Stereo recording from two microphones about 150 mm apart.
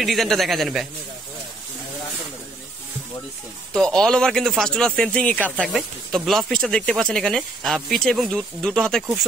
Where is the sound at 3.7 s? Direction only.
5° left (ahead or behind).